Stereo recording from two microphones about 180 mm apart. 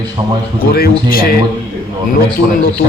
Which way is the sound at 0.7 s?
55° left (ahead or behind).